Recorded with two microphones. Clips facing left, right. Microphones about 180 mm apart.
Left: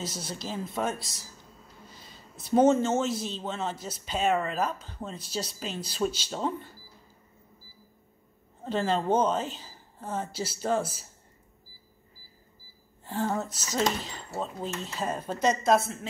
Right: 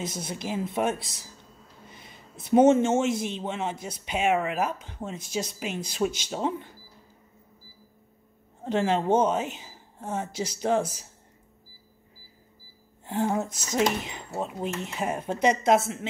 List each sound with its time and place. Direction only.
0.2 s speech: 55° right (ahead or behind)
0.5 s a man's voice: 20° right (ahead or behind)
8.6 s speech: 15° right (ahead or behind)
13.0 s speech: 15° right (ahead or behind)